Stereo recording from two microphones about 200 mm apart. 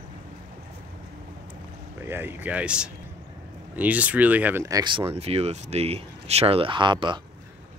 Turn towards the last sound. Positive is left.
turn(degrees=-25)  # may be behind; listen again after turning